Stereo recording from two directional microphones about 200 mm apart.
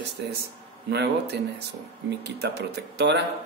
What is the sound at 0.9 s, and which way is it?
A man's voice, 55° right (ahead or behind).